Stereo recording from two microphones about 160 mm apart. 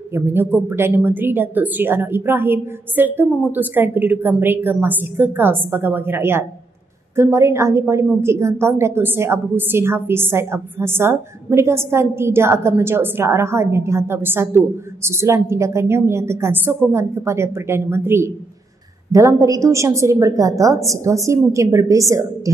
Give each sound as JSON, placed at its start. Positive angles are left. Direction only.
{"t": 0.1, "sound": "a woman's voice", "side_deg": -15}